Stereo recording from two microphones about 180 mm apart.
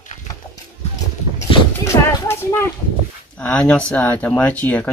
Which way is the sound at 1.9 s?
25° left (ahead or behind).